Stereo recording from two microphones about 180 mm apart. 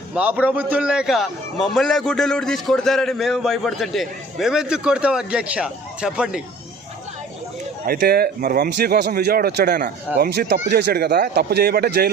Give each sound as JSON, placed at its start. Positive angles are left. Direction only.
{"t": 0.1, "sound": "a man's voice", "side_deg": -10}
{"t": 7.9, "sound": "speech", "side_deg": -60}